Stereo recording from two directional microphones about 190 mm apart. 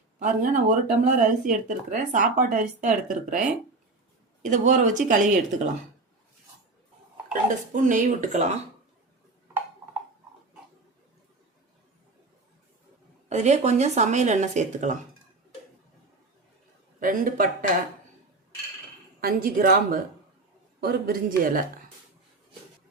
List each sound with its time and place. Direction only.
0.2 s speech: 40° right (ahead or behind)
4.4 s speech: 40° right (ahead or behind)
7.5 s speech: 45° right (ahead or behind)
13.2 s speech: 35° right (ahead or behind)
17.0 s speech: 45° right (ahead or behind)
19.2 s speech: 50° right (ahead or behind)